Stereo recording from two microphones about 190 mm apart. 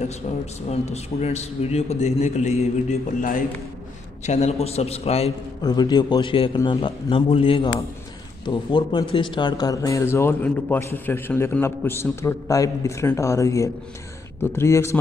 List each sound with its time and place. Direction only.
0.7 s a man's voice: 35° left (ahead or behind)
5.6 s a man's voice: 20° left (ahead or behind)